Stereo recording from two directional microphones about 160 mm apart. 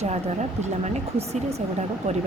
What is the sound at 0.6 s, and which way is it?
Speech, 45° right (ahead or behind).